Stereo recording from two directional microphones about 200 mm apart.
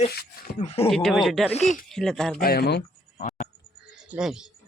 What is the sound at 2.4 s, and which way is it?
Speech, 50° left (ahead or behind).